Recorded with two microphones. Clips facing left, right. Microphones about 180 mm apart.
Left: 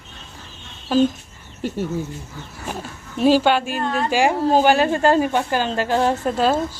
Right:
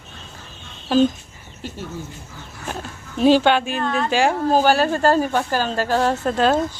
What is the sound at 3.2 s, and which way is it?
A woman's voice, 5° left (ahead or behind).